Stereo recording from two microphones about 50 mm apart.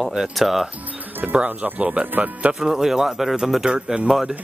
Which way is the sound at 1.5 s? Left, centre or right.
Right.